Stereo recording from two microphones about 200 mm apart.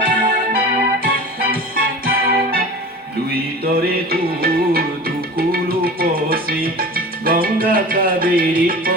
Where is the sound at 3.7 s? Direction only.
50° right (ahead or behind).